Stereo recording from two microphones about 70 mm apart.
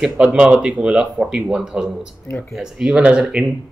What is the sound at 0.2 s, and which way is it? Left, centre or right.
Speech, centre.